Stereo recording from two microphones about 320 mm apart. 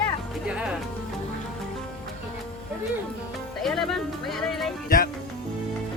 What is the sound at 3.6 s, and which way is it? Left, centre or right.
Speech, centre.